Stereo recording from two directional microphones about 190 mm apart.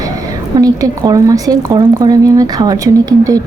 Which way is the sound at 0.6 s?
20° right (ahead or behind).